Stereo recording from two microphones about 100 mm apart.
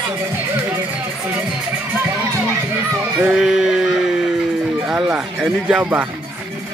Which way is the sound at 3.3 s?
5° right (ahead or behind).